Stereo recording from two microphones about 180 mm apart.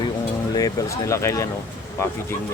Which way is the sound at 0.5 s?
20° left (ahead or behind).